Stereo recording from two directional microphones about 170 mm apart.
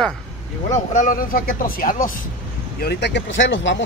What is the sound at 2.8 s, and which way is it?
Speech, 80° left.